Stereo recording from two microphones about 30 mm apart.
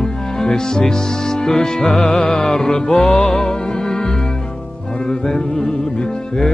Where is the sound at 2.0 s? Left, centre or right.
Left.